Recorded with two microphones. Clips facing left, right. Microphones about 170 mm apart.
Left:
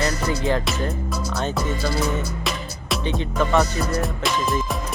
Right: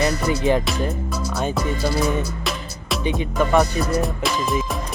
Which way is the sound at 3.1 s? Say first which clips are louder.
Right 2 dB; 10° right (ahead or behind).